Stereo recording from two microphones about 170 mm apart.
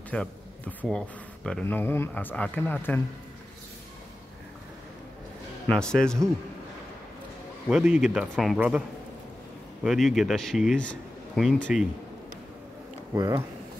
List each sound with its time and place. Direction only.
0.1 s a man's voice: 5° left (ahead or behind)
5.7 s a man's voice: 5° left (ahead or behind)
7.7 s a man's voice: 5° right (ahead or behind)
9.8 s a man's voice: centre (ahead or behind)
13.1 s speech: 25° right (ahead or behind)